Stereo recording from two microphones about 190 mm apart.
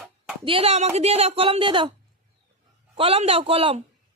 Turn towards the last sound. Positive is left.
turn(degrees=-30)  # may be behind; listen again after turning